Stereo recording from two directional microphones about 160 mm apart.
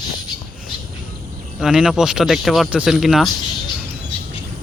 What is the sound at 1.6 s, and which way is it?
Speech, 5° right (ahead or behind).